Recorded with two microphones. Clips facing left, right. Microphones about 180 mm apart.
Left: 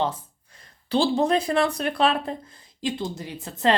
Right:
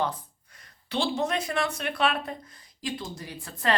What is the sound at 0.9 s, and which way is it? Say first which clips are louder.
Speech: left 7 dB; 35° left (ahead or behind).